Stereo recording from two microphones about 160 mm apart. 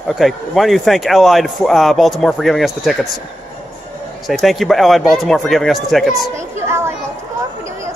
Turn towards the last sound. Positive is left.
turn(degrees=-15)  # may be behind; listen again after turning